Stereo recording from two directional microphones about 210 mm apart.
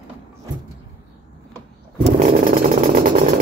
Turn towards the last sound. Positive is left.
turn(degrees=-40)  # may be behind; listen again after turning